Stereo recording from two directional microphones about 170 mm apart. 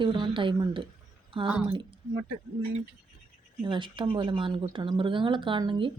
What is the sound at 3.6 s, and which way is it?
A woman's voice, 30° right (ahead or behind).